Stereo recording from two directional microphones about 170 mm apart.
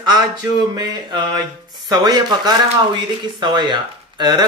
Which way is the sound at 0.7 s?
25° right (ahead or behind).